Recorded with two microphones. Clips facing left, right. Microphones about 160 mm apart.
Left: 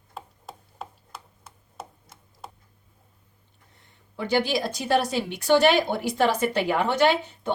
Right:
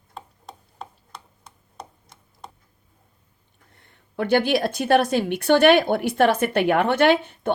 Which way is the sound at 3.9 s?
60° right (ahead or behind).